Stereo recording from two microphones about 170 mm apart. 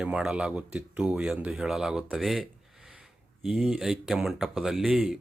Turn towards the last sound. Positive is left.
turn(degrees=0)  # may be behind; listen again after turning